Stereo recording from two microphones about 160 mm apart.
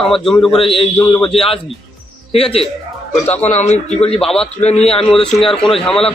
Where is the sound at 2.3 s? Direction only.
35° left (ahead or behind).